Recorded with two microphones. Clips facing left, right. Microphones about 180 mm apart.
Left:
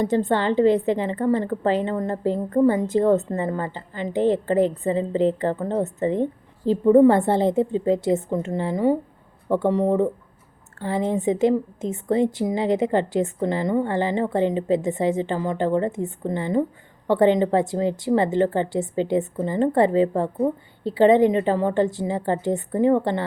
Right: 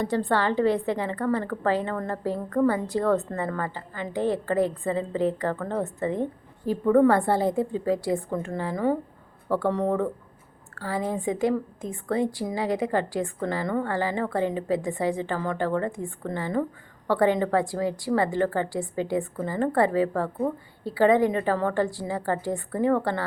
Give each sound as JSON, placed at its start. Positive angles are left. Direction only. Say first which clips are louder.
{"t": 0.0, "sound": "a woman's voice", "louder": "left 4 dB", "side_deg": 20}